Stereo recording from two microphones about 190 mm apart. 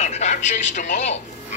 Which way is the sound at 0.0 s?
35° left (ahead or behind).